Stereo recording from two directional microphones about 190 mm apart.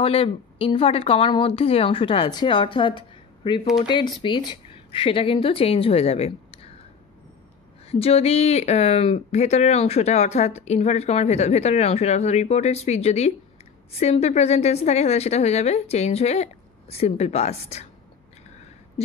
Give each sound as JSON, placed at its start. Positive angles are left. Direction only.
{"t": 0.0, "sound": "a woman's voice", "side_deg": 30}
{"t": 7.9, "sound": "speech", "side_deg": 30}
{"t": 19.0, "sound": "a sound", "side_deg": 35}